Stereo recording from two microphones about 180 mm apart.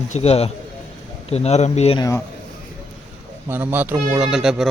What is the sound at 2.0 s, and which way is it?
Speech, 20° left (ahead or behind).